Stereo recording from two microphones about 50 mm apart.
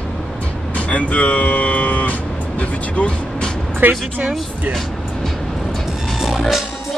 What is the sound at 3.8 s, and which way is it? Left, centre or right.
Speech, right.